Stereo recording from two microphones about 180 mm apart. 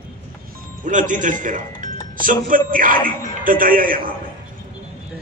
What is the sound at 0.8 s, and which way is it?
A man's voice, 45° right (ahead or behind).